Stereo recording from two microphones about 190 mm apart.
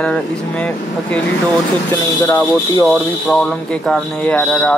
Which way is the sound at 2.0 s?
20° left (ahead or behind).